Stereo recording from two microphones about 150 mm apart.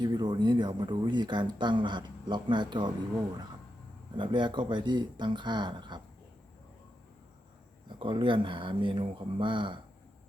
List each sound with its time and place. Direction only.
0.0 s speech: 30° right (ahead or behind)
4.2 s speech: 30° right (ahead or behind)
7.9 s speech: 35° right (ahead or behind)